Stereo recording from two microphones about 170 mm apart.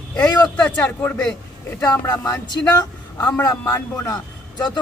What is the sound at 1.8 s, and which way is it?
Speech, 20° left (ahead or behind).